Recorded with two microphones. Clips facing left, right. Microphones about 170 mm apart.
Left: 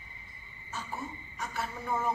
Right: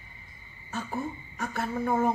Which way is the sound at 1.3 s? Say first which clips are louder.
Right 7 dB; 55° right (ahead or behind).